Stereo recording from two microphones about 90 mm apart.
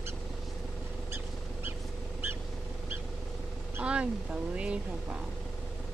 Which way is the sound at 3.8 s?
10° right (ahead or behind).